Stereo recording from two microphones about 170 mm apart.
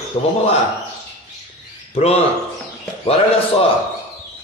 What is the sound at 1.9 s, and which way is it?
A man's voice, 35° left (ahead or behind).